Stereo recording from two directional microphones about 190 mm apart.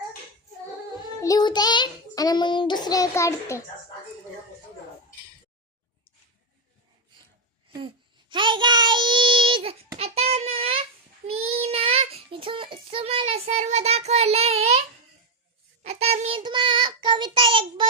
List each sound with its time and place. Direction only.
1.2 s child singing: 20° left (ahead or behind)
7.7 s child singing: 25° right (ahead or behind)
15.8 s child singing: 35° right (ahead or behind)